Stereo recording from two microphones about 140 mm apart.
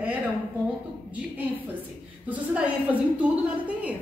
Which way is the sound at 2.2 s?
10° right (ahead or behind).